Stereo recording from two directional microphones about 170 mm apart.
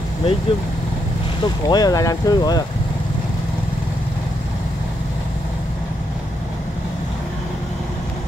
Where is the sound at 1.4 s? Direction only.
25° left (ahead or behind).